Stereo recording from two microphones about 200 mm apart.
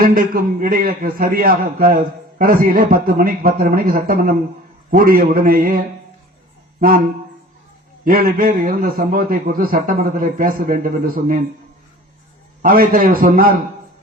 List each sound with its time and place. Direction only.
0.0 s a man's voice: 45° right (ahead or behind)
6.7 s music: 45° right (ahead or behind)
8.0 s a man's voice: 50° right (ahead or behind)
12.6 s a man's voice: 45° right (ahead or behind)